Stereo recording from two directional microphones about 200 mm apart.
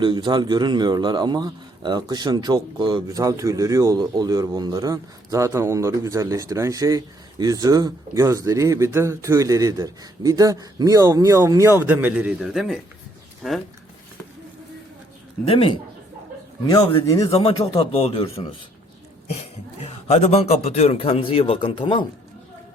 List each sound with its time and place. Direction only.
0.0 s a man's voice: 25° right (ahead or behind); by 13.6 s centre (ahead or behind)
15.4 s a man's voice: 25° left (ahead or behind)
17.6 s a man's voice: 30° left (ahead or behind)
19.8 s a man's voice: 30° left (ahead or behind)